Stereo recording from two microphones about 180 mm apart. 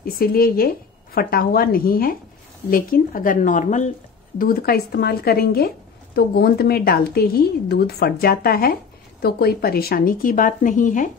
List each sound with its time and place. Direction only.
0.0 s a woman's voice: 55° left (ahead or behind)
4.4 s a woman's voice: 55° left (ahead or behind)